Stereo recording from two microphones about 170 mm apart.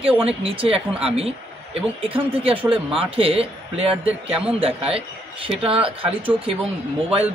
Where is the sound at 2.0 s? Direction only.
35° right (ahead or behind).